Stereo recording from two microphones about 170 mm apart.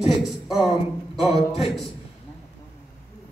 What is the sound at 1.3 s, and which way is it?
Speech, 35° left (ahead or behind).